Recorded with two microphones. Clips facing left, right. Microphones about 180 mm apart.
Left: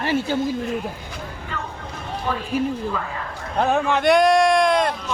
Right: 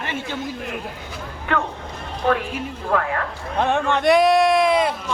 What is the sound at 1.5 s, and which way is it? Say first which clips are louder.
Speech: right 10 dB; 70° right (ahead or behind).